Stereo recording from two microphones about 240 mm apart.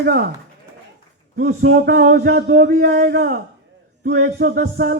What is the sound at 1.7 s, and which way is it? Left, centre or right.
A man's voice, right.